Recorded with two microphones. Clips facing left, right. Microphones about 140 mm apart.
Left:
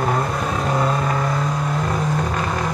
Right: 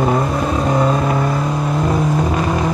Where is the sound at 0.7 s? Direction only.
20° right (ahead or behind).